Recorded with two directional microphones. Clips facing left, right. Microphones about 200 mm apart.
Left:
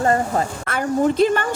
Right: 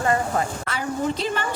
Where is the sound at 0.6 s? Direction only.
50° left (ahead or behind).